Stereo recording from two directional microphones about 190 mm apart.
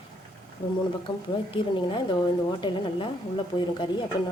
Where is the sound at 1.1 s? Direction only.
25° left (ahead or behind).